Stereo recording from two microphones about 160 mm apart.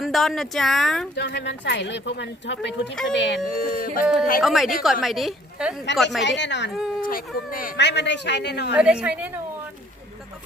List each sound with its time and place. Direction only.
0.0 s a woman's voice: centre (ahead or behind)
1.1 s speech: 90° left; by 4.0 s 65° left (ahead or behind)
4.0 s a woman's voice: 5° right (ahead or behind)
6.2 s speech: 90° left
6.7 s a woman's voice: 5° right (ahead or behind)
7.0 s speech: 60° left (ahead or behind); by 8.7 s 90° left
8.7 s a woman's voice: 5° right (ahead or behind)